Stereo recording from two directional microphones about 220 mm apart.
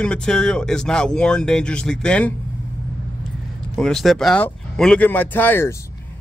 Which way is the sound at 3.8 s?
Centre (ahead or behind).